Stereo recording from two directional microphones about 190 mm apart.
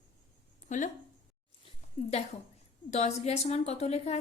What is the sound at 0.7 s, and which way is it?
Speech, 40° left (ahead or behind).